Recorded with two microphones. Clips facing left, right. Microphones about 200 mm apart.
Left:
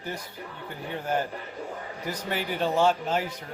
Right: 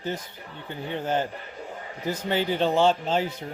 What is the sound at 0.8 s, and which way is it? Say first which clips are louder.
Speech: right 2 dB; 25° right (ahead or behind).